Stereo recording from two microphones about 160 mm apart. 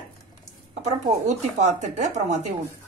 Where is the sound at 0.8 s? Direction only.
45° right (ahead or behind).